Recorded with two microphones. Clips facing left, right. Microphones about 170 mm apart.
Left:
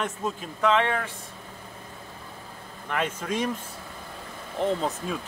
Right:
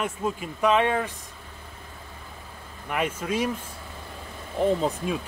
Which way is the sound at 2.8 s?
10° right (ahead or behind).